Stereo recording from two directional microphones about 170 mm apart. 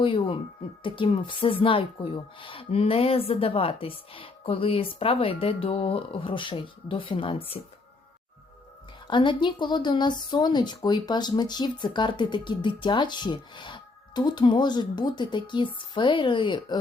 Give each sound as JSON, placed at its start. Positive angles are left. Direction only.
{"t": 0.0, "sound": "speech", "side_deg": 30}
{"t": 9.0, "sound": "speech", "side_deg": 30}